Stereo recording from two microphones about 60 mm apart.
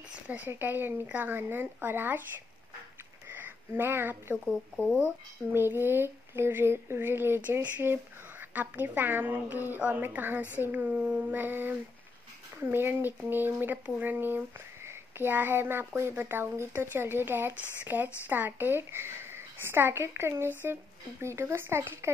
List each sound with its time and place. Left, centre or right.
0.1 s a sound: right
0.5 s speech: right
3.3 s speech: right
4.7 s speech: centre
5.5 s speech: right
7.6 s speech: right
12.7 s a child's voice: right